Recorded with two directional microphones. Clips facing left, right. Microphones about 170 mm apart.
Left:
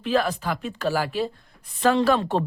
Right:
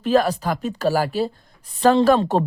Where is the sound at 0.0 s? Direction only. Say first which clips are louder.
Right 5 dB; 40° right (ahead or behind).